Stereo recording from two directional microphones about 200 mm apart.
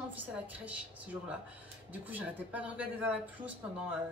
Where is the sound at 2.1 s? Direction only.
5° right (ahead or behind).